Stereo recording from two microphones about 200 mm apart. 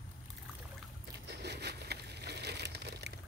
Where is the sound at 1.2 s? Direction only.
55° right (ahead or behind).